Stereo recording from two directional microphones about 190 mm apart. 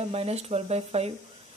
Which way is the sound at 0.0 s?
35° right (ahead or behind).